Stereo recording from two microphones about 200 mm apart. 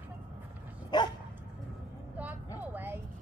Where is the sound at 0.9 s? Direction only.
20° left (ahead or behind).